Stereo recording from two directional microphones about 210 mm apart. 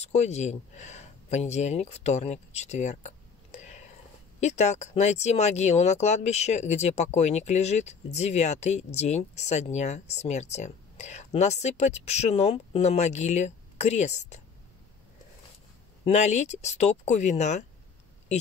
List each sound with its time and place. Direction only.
0.0 s speech: 30° left (ahead or behind)
3.5 s a sound: 35° left (ahead or behind)
4.4 s speech: 35° left (ahead or behind)
16.1 s speech: 35° left (ahead or behind)